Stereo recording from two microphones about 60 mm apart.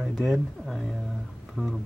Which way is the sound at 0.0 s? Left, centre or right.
Centre.